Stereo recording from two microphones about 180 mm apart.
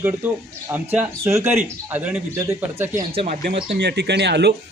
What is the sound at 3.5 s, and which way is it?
Speech, 70° right (ahead or behind).